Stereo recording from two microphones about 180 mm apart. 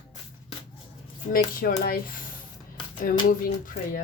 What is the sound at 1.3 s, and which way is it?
Speech, 50° left (ahead or behind).